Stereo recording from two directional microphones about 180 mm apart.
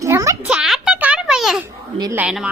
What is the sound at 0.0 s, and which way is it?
Music, 15° right (ahead or behind).